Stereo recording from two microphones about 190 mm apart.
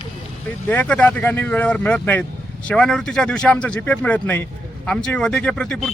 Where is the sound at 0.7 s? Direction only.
10° left (ahead or behind).